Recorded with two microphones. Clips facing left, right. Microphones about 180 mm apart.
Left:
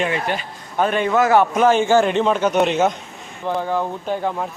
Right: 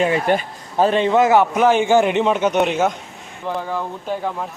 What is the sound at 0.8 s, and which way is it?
A man's voice, 25° right (ahead or behind).